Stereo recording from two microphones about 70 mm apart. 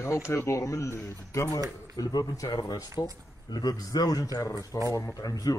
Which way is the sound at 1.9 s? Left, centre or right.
Left.